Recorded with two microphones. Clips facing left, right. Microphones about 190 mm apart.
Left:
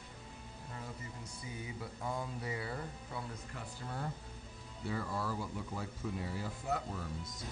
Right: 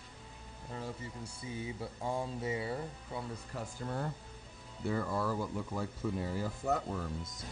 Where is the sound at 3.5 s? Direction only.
45° right (ahead or behind).